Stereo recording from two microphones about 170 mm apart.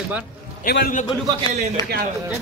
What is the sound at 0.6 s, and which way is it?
Speech, 65° left (ahead or behind).